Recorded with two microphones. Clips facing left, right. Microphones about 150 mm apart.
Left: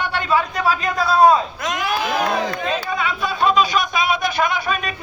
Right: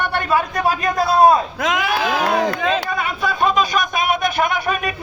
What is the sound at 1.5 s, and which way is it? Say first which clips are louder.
Speech: right 5 dB; 90° right.